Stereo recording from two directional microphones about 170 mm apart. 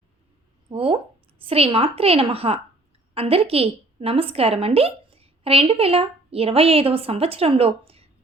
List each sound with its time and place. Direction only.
0.7 s a woman's voice: 35° right (ahead or behind)